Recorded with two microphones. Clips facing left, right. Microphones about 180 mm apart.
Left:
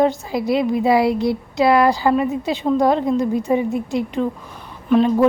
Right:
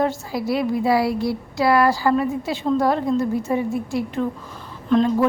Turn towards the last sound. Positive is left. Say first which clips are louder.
# left 2 dB
turn(degrees=10)  # may be behind; listen again after turning